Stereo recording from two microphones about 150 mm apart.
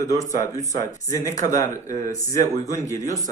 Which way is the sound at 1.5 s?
20° left (ahead or behind).